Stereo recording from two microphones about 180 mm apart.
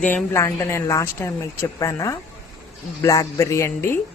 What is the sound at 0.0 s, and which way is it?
Speech, 10° left (ahead or behind).